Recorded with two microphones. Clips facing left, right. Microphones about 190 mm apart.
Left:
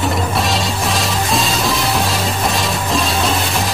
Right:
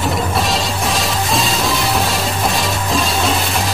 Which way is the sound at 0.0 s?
Centre (ahead or behind).